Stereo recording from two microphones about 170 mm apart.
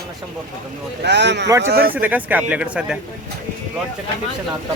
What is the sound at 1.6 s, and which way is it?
Speech, 70° right (ahead or behind).